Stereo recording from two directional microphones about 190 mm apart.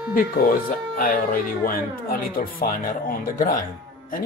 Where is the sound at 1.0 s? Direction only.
45° left (ahead or behind).